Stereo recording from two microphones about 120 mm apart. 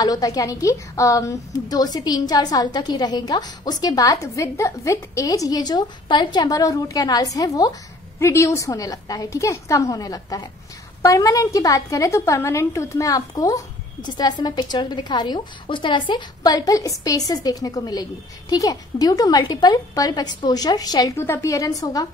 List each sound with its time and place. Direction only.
0.0 s a woman's voice: 30° left (ahead or behind)
21.2 s a woman's voice: 25° left (ahead or behind)